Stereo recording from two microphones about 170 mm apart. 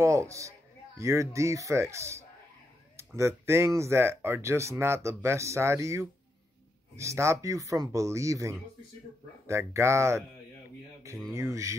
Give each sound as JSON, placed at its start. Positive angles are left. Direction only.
{"t": 0.0, "sound": "speech", "side_deg": -15}
{"t": 11.3, "sound": "speech", "side_deg": -15}